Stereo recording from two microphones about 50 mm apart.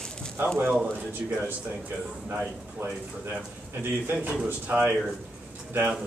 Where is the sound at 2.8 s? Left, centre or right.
Right.